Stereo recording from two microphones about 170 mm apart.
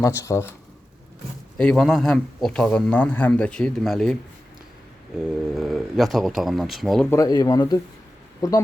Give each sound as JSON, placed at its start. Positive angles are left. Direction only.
{"t": 0.0, "sound": "speech", "side_deg": 15}
{"t": 1.5, "sound": "speech", "side_deg": 5}
{"t": 5.5, "sound": "speech", "side_deg": 0}
{"t": 7.1, "sound": "speech", "side_deg": 20}